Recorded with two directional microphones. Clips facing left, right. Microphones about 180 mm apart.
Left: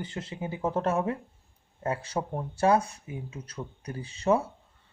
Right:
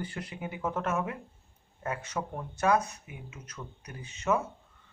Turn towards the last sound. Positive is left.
turn(degrees=35)  # may be behind; listen again after turning